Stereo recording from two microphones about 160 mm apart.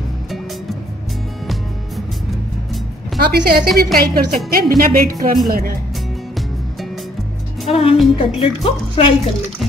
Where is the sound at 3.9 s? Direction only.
65° right (ahead or behind).